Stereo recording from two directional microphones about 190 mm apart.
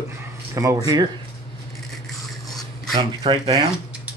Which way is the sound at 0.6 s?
20° right (ahead or behind).